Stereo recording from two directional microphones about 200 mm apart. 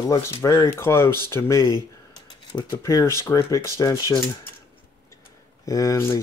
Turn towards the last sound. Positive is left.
turn(degrees=15)  # may be behind; listen again after turning